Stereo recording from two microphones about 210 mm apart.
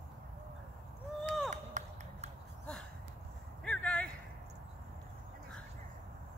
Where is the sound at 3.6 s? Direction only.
5° left (ahead or behind).